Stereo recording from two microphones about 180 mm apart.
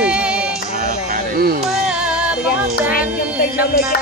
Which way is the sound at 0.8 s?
50° right (ahead or behind).